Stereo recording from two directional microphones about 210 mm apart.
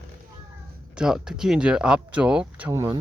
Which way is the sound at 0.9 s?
5° right (ahead or behind).